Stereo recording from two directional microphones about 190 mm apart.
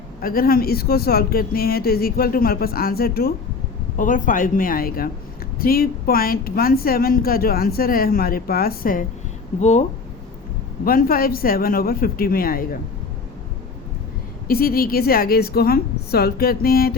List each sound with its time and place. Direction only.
0.2 s a woman's voice: 50° left (ahead or behind)
9.6 s speech: 35° left (ahead or behind)
10.8 s a woman's voice: 50° left (ahead or behind)
14.4 s a woman's voice: 50° left (ahead or behind)